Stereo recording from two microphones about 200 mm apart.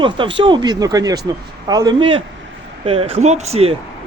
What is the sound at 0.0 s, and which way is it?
Speech, 25° right (ahead or behind).